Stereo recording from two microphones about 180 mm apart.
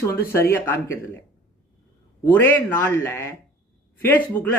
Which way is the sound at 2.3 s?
10° left (ahead or behind).